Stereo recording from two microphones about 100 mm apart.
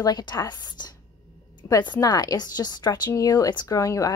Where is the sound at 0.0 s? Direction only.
45° left (ahead or behind).